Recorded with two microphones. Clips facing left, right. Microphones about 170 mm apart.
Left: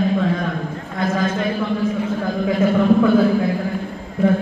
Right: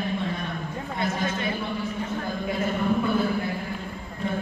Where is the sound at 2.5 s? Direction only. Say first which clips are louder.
Left 10 dB; 90° left.